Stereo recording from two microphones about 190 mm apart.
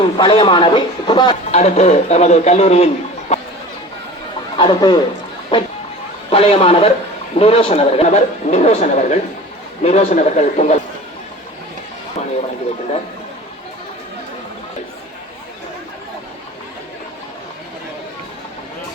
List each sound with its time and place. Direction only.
0.2 s speech: 25° left (ahead or behind)
1.5 s speech: 35° left (ahead or behind)
4.5 s speech: 25° left (ahead or behind)